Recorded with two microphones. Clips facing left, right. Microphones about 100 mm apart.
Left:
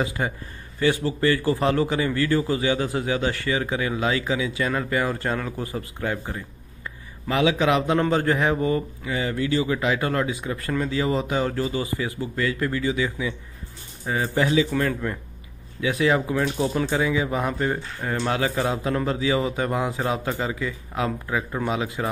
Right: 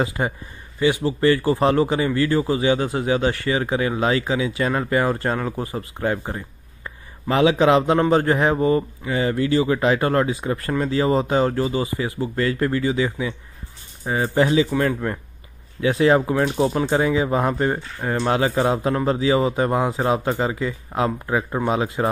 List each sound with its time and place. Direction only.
0.0 s speech: 25° right (ahead or behind)